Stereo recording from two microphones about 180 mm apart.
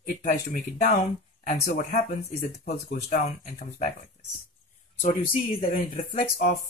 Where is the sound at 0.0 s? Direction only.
45° left (ahead or behind).